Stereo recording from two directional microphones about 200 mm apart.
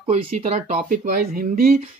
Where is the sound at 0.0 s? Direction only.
30° right (ahead or behind).